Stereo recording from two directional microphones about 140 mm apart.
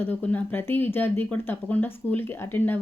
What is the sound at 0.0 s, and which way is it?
A woman's voice, 10° left (ahead or behind).